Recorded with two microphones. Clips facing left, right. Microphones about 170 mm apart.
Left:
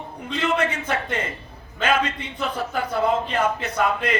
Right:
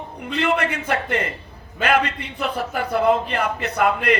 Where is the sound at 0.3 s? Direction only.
65° right (ahead or behind).